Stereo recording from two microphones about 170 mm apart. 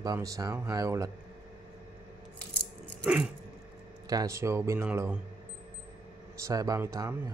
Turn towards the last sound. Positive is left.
turn(degrees=-15)  # may be behind; listen again after turning